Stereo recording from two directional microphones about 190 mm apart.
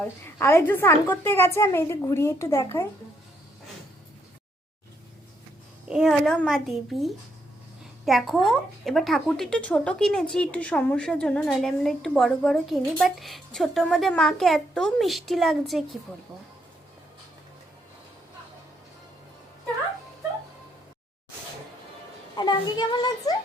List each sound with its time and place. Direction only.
0.0 s a woman's voice: 10° left (ahead or behind)
5.9 s speech: centre (ahead or behind)
22.4 s a child's voice: 25° left (ahead or behind)